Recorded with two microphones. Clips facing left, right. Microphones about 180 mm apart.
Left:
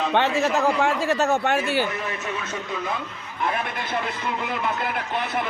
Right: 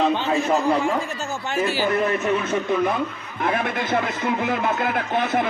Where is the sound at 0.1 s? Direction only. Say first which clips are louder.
Even; 70° left (ahead or behind).